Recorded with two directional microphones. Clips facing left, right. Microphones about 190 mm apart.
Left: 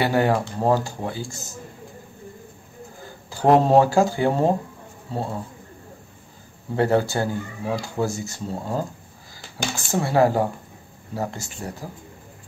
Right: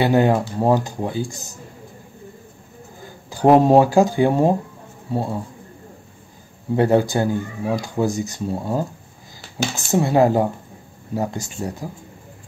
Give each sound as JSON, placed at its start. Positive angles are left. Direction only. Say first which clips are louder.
{"t": 0.0, "sound": "speech", "louder": "right 4 dB", "side_deg": -20}
{"t": 3.3, "sound": "a sound", "louder": "right 5 dB", "side_deg": -15}
{"t": 3.6, "sound": "speech", "louder": "right 3 dB", "side_deg": -15}
{"t": 6.7, "sound": "speech", "louder": "right 4 dB", "side_deg": -15}